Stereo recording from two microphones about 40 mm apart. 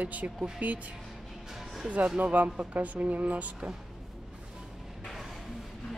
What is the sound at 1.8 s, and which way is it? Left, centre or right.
Speech, right.